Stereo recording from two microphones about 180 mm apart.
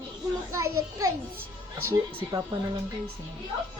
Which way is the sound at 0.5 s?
20° right (ahead or behind).